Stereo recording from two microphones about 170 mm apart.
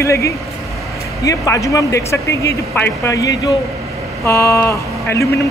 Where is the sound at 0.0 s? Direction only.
15° left (ahead or behind).